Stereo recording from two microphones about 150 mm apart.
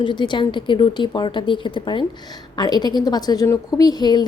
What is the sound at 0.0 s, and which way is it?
A woman's voice, 30° left (ahead or behind).